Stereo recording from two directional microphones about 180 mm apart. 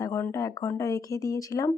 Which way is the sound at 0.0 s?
15° left (ahead or behind).